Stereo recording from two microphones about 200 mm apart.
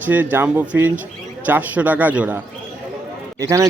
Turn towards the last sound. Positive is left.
turn(degrees=-15)  # may be behind; listen again after turning